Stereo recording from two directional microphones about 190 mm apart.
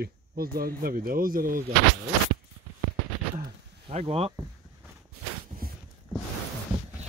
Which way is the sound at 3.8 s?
30° right (ahead or behind).